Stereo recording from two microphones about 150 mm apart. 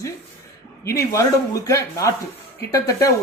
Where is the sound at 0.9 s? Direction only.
20° left (ahead or behind).